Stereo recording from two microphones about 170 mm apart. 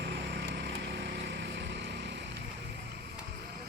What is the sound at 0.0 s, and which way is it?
Vehicle, 90° right.